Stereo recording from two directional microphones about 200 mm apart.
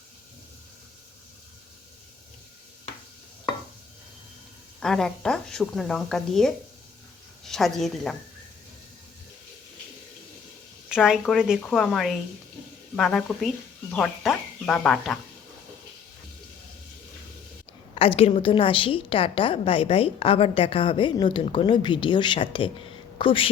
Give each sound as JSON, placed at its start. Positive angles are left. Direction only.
{"t": 4.8, "sound": "a woman's voice", "side_deg": 0}
{"t": 10.8, "sound": "a woman's voice", "side_deg": -5}
{"t": 17.9, "sound": "a woman's voice", "side_deg": 30}